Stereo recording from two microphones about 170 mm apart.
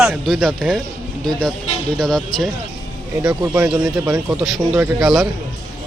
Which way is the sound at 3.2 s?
20° right (ahead or behind).